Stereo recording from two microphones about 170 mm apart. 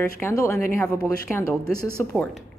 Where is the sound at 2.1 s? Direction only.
Centre (ahead or behind).